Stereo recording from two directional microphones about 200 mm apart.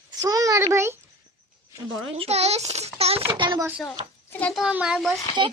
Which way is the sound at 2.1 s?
30° right (ahead or behind).